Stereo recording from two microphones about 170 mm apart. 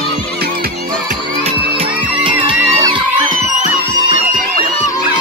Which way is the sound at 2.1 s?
30° right (ahead or behind).